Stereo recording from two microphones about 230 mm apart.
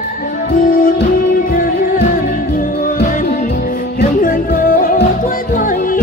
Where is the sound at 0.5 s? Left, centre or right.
Left.